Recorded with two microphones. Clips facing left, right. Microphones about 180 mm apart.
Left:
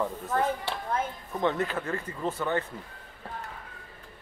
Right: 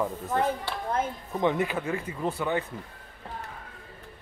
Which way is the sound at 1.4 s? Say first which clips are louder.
Right 2 dB; 10° right (ahead or behind).